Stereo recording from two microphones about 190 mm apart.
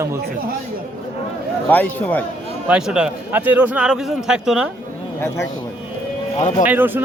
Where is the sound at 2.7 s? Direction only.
5° right (ahead or behind).